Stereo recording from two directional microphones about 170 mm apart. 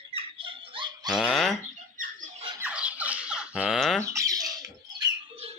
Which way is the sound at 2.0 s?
50° right (ahead or behind).